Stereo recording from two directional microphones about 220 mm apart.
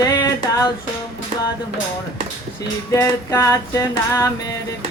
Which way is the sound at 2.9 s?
15° left (ahead or behind).